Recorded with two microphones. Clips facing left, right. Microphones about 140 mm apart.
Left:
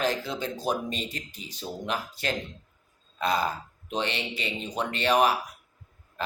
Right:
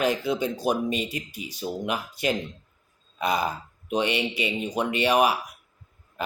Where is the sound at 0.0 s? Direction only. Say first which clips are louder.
Right 4 dB; 10° right (ahead or behind).